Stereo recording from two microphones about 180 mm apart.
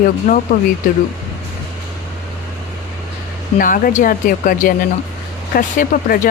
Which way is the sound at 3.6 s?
50° left (ahead or behind).